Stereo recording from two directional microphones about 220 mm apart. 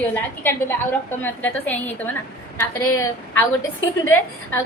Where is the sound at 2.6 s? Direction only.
80° left.